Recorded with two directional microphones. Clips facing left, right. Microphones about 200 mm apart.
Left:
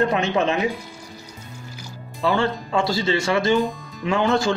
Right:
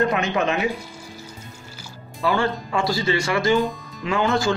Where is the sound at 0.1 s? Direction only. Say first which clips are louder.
Left 1 dB; 30° left (ahead or behind).